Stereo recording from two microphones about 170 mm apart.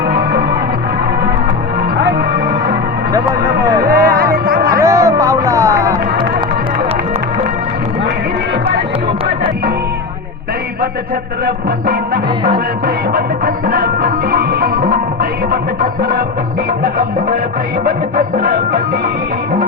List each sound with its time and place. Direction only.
0.1 s music: 65° right (ahead or behind)
3.8 s music: 20° right (ahead or behind)
4.1 s music: 60° right (ahead or behind)
4.8 s music: 15° right (ahead or behind)
11.4 s music: 60° right (ahead or behind)